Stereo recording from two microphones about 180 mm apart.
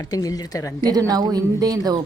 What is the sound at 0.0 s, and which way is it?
Speech, 20° left (ahead or behind).